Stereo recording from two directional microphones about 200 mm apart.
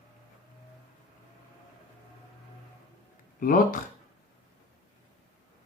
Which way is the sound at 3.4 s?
45° left (ahead or behind).